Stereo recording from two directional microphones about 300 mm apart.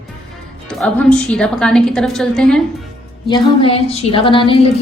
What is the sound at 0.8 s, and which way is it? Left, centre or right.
A woman's voice, centre.